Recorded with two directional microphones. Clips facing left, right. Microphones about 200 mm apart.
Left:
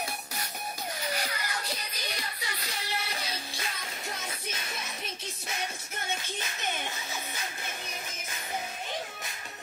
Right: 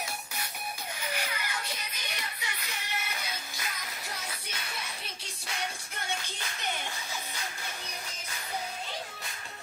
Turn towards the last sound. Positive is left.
turn(degrees=20)  # may be behind; listen again after turning